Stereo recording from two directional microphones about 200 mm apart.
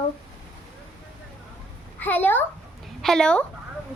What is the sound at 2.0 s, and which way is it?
A child's voice, 10° left (ahead or behind).